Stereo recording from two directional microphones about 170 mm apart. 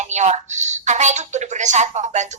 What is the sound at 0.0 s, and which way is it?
Speech, 45° right (ahead or behind).